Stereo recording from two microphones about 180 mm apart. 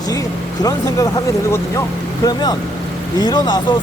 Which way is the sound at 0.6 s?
20° left (ahead or behind).